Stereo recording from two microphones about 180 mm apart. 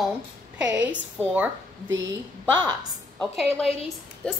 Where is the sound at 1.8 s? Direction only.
90° right.